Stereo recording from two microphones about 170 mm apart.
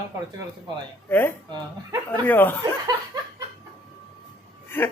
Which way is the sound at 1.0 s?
10° left (ahead or behind).